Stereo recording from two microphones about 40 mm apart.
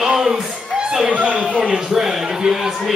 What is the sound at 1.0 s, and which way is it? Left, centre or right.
Speech, right.